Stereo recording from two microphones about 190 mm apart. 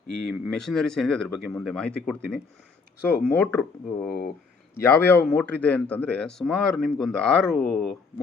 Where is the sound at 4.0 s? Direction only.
50° left (ahead or behind).